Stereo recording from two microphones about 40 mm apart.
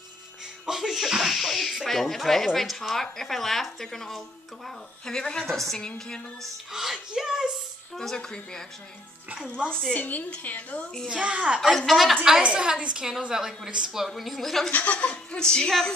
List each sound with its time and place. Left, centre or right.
0.7 s a sound: centre
1.9 s speech: centre
6.7 s speech: centre
7.9 s speech: centre
9.7 s speech: centre
9.9 s a woman's voice: left
11.1 s a child's voice: right
11.7 s a woman's voice: centre
12.5 s a child's voice: centre
14.0 s a woman's voice: centre
14.7 s a woman's voice: left
15.0 s a woman's voice: centre